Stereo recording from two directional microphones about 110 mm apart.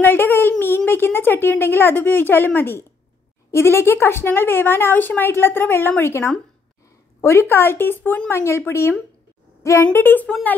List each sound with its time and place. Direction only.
0.0 s a woman's voice: 20° left (ahead or behind)
9.6 s a sound: 30° left (ahead or behind)
9.9 s a woman's voice: 15° left (ahead or behind)